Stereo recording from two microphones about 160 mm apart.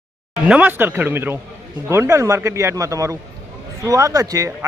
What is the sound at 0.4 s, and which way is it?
Speech, 10° right (ahead or behind).